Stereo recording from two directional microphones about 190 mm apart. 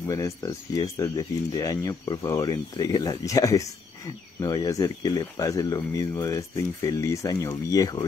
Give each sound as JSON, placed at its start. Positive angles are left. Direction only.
{"t": 0.1, "sound": "speech", "side_deg": 15}